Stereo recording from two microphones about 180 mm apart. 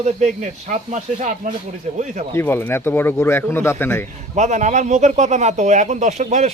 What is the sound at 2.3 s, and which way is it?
Speech, 10° left (ahead or behind).